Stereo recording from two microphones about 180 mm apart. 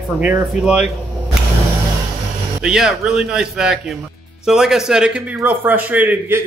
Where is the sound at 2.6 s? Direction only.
5° right (ahead or behind).